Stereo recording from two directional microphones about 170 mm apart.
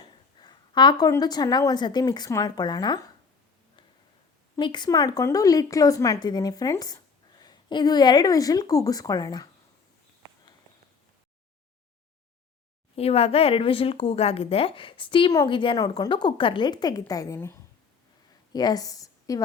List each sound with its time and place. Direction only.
0.3 s speech: 25° left (ahead or behind)
4.5 s speech: 25° left (ahead or behind)
13.0 s a woman's voice: 35° left (ahead or behind); by 19.4 s 20° left (ahead or behind)